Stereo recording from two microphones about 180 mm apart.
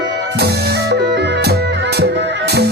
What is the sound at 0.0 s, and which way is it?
Music, 75° right (ahead or behind).